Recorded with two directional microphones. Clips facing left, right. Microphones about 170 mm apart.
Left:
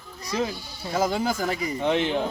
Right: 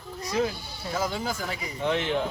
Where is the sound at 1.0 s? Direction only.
45° left (ahead or behind).